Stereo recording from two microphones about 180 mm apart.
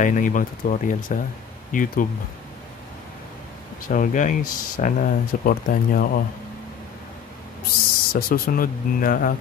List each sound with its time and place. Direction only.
0.0 s speech: 45° left (ahead or behind)
3.8 s speech: 50° left (ahead or behind)
8.1 s speech: 55° left (ahead or behind)